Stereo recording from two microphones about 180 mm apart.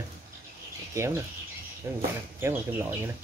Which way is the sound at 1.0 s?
15° right (ahead or behind).